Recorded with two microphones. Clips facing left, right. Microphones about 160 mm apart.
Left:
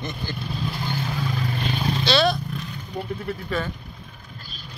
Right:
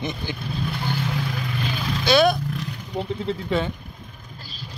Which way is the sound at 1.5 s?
35° left (ahead or behind).